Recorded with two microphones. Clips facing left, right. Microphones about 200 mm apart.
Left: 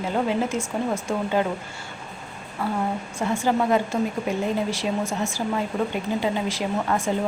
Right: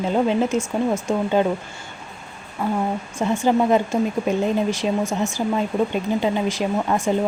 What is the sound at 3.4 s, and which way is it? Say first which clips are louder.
Speech: right 4 dB; 20° right (ahead or behind).